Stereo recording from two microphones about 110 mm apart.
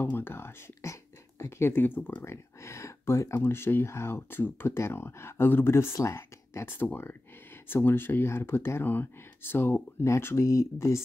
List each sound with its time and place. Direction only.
0.0 s speech: 20° left (ahead or behind)